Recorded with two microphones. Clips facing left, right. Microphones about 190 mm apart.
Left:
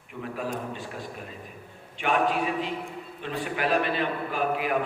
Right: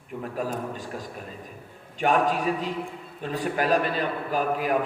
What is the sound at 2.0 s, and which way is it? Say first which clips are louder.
A man's voice: right 2 dB; 40° right (ahead or behind).